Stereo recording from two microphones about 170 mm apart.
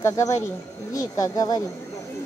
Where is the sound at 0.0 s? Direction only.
15° left (ahead or behind).